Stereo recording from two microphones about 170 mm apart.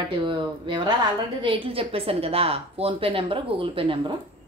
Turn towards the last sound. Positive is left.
turn(degrees=-30)  # may be behind; listen again after turning